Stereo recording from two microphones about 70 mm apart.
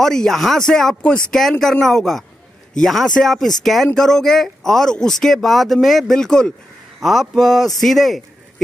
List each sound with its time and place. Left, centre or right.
0.0 s speech: centre